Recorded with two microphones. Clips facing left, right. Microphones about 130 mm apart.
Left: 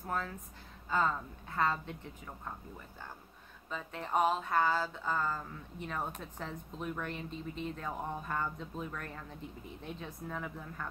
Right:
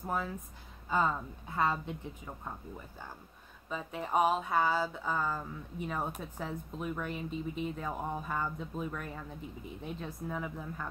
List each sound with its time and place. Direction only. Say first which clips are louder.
0.0 s speech: right 2 dB; 10° right (ahead or behind)
3.7 s speech: right 2 dB; 10° right (ahead or behind)